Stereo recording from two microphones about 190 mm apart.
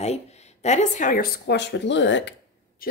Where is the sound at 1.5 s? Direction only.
65° left (ahead or behind).